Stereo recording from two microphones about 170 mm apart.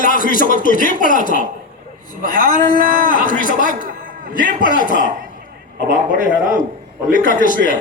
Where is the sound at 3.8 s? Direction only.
55° right (ahead or behind).